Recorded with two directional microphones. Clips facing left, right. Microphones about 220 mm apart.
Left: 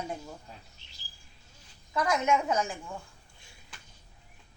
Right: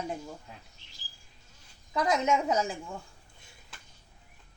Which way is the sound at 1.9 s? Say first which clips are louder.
Right 1 dB; 20° right (ahead or behind).